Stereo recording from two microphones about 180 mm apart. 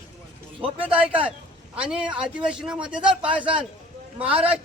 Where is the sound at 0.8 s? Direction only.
10° right (ahead or behind).